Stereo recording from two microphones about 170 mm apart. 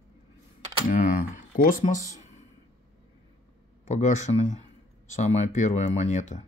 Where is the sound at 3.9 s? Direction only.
45° left (ahead or behind).